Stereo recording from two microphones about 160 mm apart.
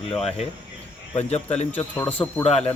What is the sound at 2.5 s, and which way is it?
Speech, 40° left (ahead or behind).